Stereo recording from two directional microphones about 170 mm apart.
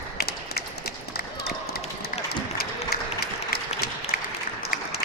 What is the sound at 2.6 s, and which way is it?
Applause, 65° left (ahead or behind).